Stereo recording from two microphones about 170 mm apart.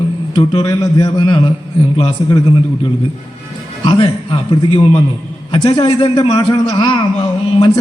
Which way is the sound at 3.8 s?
30° left (ahead or behind).